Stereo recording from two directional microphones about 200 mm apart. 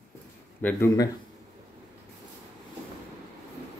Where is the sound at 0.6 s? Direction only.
15° left (ahead or behind).